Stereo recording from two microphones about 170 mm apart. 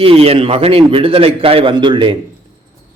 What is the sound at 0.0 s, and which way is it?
A man's voice, 35° right (ahead or behind).